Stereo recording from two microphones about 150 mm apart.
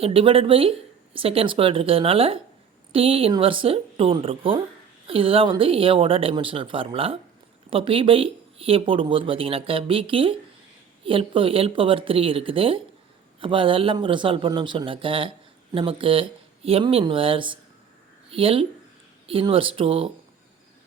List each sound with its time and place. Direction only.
0.0 s speech: 40° right (ahead or behind)